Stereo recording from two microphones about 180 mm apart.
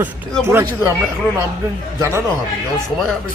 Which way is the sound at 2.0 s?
15° right (ahead or behind).